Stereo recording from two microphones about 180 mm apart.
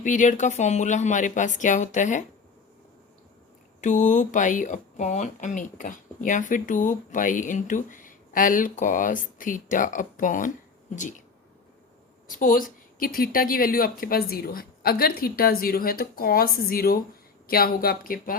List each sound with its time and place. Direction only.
0.0 s speech: 45° left (ahead or behind)
3.8 s speech: 40° left (ahead or behind)
12.3 s a woman's voice: 50° left (ahead or behind)